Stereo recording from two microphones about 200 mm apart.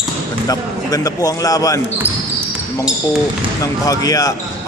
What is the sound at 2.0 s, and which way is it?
Basketball bounce, 10° right (ahead or behind).